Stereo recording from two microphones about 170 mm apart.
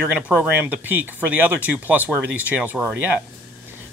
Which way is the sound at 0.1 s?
10° right (ahead or behind).